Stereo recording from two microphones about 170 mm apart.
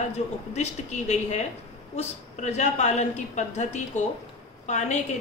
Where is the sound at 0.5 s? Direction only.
40° left (ahead or behind).